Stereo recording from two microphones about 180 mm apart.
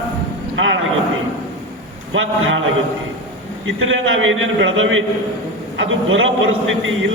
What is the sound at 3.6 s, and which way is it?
A man's voice, 90° right.